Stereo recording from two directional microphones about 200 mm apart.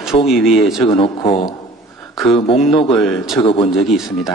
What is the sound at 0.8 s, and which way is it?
Speech, 25° left (ahead or behind).